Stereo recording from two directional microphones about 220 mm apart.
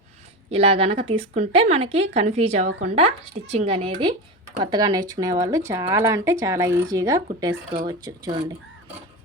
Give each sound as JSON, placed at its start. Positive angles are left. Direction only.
{"t": 0.5, "sound": "speech", "side_deg": -25}